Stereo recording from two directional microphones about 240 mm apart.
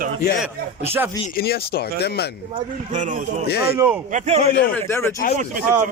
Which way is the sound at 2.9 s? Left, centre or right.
Right.